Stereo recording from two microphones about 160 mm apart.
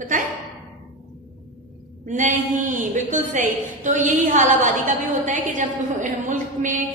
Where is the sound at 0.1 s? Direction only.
55° right (ahead or behind).